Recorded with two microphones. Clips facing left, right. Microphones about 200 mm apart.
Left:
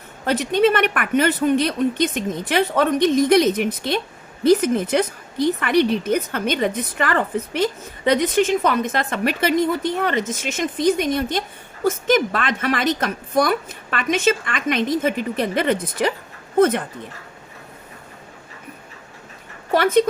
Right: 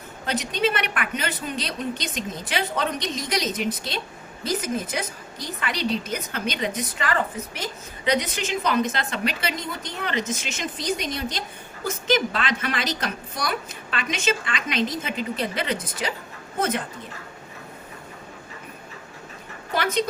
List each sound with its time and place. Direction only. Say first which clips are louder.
0.3 s a woman's voice: left 8 dB; 55° left (ahead or behind)
19.7 s a woman's voice: left 8 dB; 55° left (ahead or behind)